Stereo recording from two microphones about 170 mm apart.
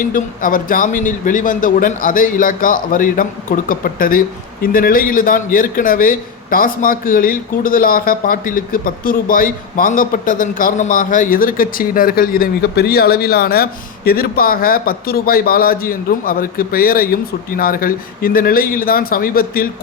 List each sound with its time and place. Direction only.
0.0 s speech: 55° left (ahead or behind)